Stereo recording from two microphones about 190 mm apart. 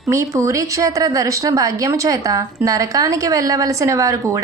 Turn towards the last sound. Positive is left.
turn(degrees=-15)  # may be behind; listen again after turning